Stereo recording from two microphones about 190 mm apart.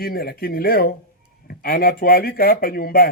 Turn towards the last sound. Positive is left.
turn(degrees=50)  # may be behind; listen again after turning